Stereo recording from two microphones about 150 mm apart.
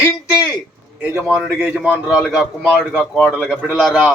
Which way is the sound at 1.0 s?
10° right (ahead or behind).